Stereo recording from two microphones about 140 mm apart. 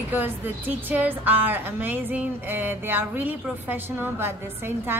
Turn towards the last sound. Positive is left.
turn(degrees=-15)  # may be behind; listen again after turning